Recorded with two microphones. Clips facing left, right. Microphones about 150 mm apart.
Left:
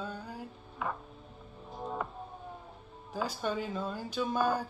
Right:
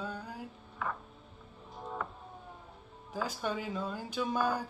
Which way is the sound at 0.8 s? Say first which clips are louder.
Left 1 dB; 15° left (ahead or behind).